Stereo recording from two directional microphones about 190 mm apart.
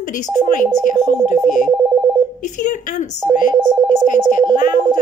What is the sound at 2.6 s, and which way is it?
Speech, 40° left (ahead or behind).